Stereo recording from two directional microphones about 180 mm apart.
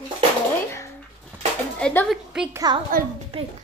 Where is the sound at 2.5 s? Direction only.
25° right (ahead or behind).